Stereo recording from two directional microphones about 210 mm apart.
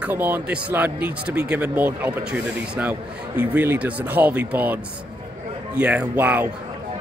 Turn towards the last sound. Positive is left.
turn(degrees=-10)  # may be behind; listen again after turning